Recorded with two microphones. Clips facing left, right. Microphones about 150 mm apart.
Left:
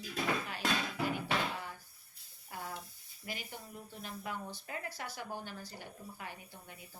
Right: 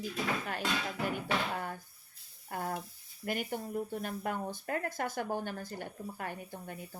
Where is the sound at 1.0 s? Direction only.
50° right (ahead or behind).